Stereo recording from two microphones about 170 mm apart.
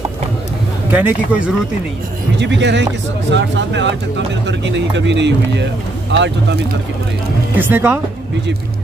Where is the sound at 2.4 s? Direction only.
90° right.